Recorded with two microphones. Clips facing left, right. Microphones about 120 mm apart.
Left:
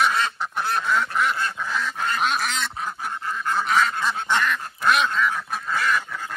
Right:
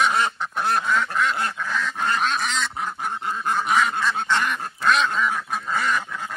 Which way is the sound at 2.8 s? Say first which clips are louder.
Right 2 dB; 20° right (ahead or behind).